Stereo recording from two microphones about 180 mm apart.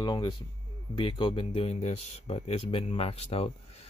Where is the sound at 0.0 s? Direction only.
25° left (ahead or behind).